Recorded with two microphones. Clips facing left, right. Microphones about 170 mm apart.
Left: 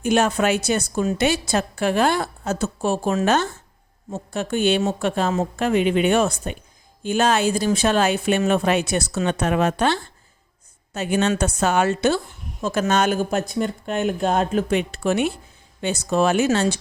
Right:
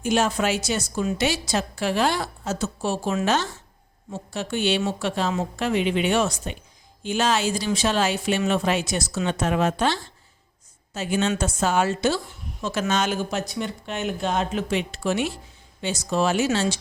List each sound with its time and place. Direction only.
0.0 s a woman's voice: 60° left (ahead or behind)
12.6 s a woman's voice: 50° left (ahead or behind)